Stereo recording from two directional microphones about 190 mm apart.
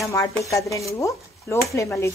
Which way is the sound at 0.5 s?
15° left (ahead or behind).